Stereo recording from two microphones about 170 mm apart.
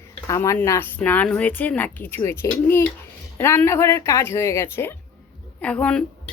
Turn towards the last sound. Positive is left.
turn(degrees=5)  # may be behind; listen again after turning